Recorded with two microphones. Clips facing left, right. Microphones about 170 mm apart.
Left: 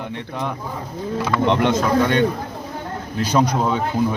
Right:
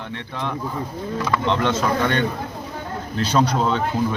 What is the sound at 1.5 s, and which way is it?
Speech, 15° left (ahead or behind).